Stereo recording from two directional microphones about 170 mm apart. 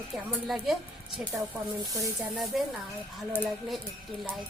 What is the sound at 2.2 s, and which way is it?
A woman's voice, 5° right (ahead or behind).